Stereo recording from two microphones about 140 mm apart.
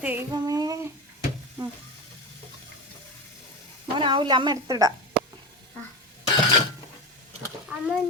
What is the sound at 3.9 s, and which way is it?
Speech, 35° right (ahead or behind).